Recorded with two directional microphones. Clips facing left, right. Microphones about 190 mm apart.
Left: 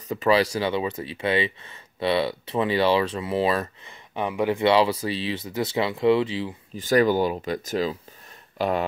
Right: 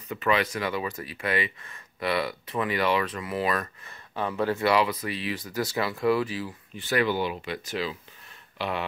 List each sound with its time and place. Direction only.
0.1 s speech: 30° left (ahead or behind)
3.8 s speech: 15° left (ahead or behind)
5.0 s speech: 30° left (ahead or behind)
6.9 s speech: 40° left (ahead or behind)